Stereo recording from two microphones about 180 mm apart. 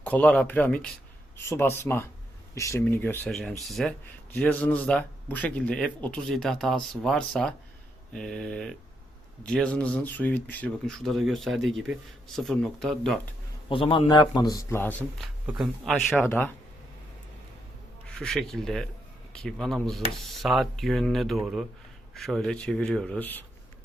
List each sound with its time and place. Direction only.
0.0 s a man's voice: 10° left (ahead or behind)
13.7 s a man's voice: 30° left (ahead or behind)
14.7 s speech: 10° left (ahead or behind)
15.2 s a man's voice: 5° right (ahead or behind)
18.1 s a man's voice: 5° left (ahead or behind)